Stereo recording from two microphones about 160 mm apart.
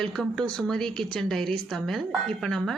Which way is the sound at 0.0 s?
5° left (ahead or behind).